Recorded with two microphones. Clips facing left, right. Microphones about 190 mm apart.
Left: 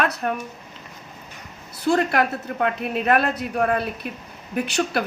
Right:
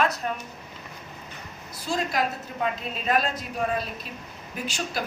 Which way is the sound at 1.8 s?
65° left (ahead or behind).